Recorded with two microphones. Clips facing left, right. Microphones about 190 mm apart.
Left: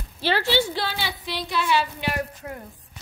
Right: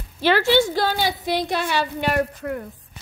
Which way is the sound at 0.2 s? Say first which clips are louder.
Right 5 dB; 50° right (ahead or behind).